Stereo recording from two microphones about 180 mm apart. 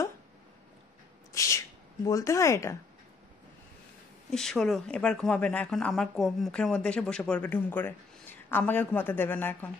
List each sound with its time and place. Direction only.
1.3 s a sound: 15° left (ahead or behind)
2.0 s speech: 15° left (ahead or behind)
4.3 s a woman's voice: 5° left (ahead or behind)